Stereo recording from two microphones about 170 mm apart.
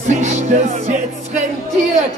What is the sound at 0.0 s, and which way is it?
Music, 45° right (ahead or behind).